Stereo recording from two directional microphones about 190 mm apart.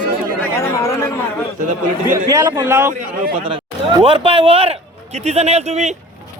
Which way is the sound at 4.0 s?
30° right (ahead or behind).